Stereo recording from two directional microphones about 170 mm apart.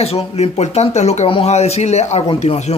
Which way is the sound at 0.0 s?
40° left (ahead or behind).